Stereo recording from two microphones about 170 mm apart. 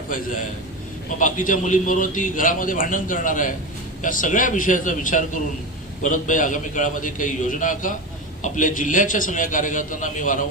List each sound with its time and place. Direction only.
1.2 s a man's voice: 50° left (ahead or behind)